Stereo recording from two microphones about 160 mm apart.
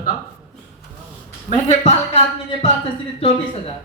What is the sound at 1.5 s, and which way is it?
Speech, 40° left (ahead or behind).